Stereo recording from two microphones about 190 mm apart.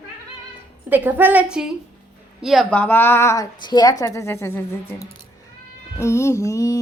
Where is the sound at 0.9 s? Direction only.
10° right (ahead or behind); by 6.8 s 15° left (ahead or behind).